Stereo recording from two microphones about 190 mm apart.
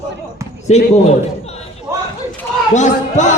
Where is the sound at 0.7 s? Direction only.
35° left (ahead or behind).